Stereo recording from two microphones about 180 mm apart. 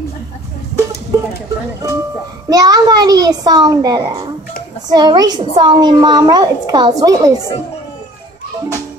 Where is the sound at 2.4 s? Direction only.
20° right (ahead or behind).